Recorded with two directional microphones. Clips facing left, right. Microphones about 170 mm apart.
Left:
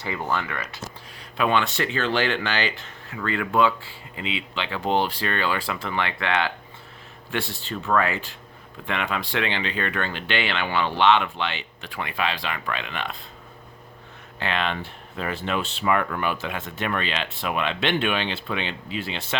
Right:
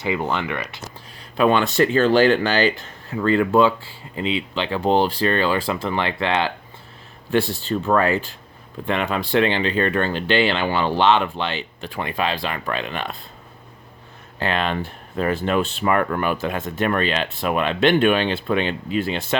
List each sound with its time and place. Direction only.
0.0 s speech: 20° right (ahead or behind)
1.4 s speech: 40° right (ahead or behind)
14.3 s speech: 40° right (ahead or behind)